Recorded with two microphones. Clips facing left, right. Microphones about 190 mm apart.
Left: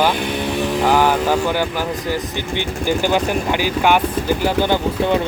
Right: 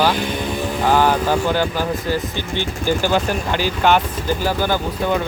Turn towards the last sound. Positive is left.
turn(degrees=20)  # may be behind; listen again after turning